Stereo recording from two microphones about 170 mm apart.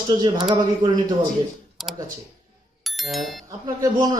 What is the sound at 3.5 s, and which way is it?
Speech, 20° right (ahead or behind).